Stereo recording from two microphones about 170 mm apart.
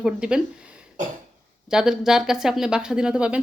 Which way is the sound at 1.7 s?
5° right (ahead or behind).